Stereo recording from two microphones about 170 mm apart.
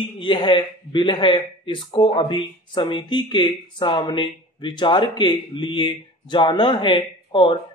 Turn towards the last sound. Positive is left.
turn(degrees=30)  # may be behind; listen again after turning